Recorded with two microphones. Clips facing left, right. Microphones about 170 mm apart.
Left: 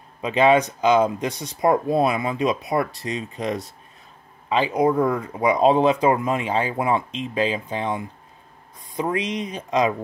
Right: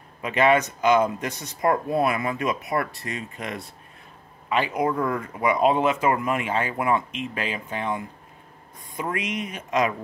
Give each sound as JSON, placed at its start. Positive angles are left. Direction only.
{"t": 0.2, "sound": "speech", "side_deg": 30}
{"t": 2.0, "sound": "speech", "side_deg": 20}
{"t": 3.3, "sound": "speech", "side_deg": 35}